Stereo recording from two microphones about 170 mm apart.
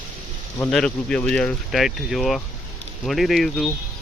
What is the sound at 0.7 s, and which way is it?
Speech, 5° left (ahead or behind).